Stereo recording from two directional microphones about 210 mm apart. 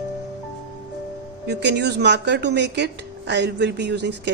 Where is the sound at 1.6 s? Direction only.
55° right (ahead or behind).